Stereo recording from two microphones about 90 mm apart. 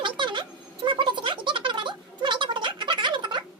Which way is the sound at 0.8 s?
65° right (ahead or behind).